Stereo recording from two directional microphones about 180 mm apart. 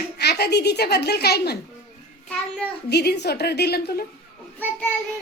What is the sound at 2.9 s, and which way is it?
A woman's voice, 65° left (ahead or behind).